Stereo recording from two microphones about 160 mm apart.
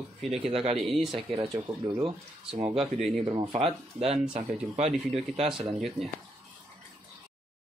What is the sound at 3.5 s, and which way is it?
Speech, 35° right (ahead or behind).